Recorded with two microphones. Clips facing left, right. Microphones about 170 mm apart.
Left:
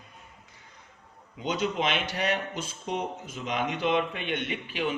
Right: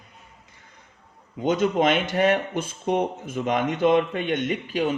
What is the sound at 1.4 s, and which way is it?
Speech, 50° right (ahead or behind).